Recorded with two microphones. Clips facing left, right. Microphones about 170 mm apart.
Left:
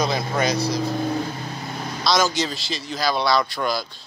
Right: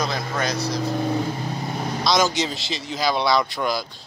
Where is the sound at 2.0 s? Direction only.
20° right (ahead or behind).